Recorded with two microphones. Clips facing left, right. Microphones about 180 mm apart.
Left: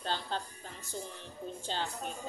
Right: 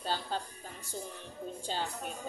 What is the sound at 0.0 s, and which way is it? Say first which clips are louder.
Music: right 1 dB; 10° right (ahead or behind).